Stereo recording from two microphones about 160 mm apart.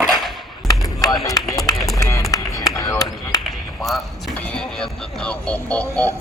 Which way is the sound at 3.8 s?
Centre (ahead or behind).